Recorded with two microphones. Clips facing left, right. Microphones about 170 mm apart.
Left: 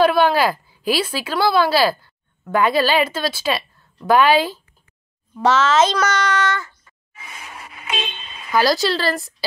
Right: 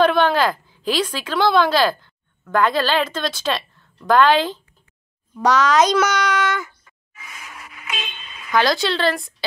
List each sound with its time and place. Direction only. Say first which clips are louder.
0.0 s a woman's voice: left 1 dB; 10° left (ahead or behind)
5.6 s speech: right 2 dB; 15° right (ahead or behind)
7.2 s vehicle: left 2 dB; 30° left (ahead or behind)
8.5 s speech: left 1 dB; 5° left (ahead or behind)